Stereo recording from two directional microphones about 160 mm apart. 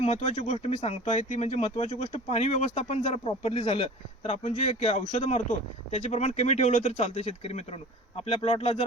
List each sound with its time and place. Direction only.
0.0 s speech: 40° left (ahead or behind)